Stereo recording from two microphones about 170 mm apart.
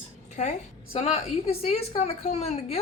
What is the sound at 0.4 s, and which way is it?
A woman's voice, 45° left (ahead or behind).